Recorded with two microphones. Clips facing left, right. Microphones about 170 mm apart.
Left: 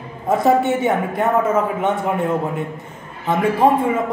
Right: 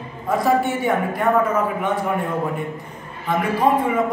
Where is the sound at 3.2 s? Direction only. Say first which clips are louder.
Left 3 dB; 25° left (ahead or behind).